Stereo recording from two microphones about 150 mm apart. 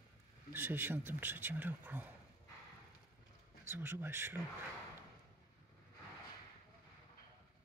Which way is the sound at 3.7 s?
15° right (ahead or behind).